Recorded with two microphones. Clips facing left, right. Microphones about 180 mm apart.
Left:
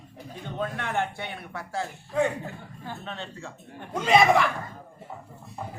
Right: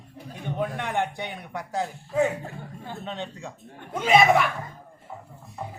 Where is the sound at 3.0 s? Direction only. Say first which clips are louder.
Right 3 dB; 15° right (ahead or behind).